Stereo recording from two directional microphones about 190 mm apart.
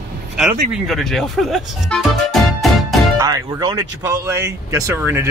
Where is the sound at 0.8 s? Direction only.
Centre (ahead or behind).